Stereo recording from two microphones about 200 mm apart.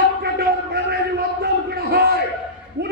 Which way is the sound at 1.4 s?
50° right (ahead or behind).